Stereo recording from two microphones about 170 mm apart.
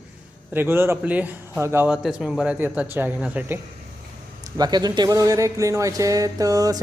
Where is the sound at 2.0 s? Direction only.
Centre (ahead or behind).